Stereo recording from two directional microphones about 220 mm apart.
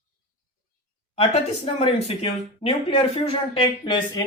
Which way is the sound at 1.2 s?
25° left (ahead or behind).